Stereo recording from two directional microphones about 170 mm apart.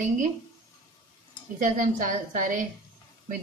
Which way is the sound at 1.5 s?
50° right (ahead or behind).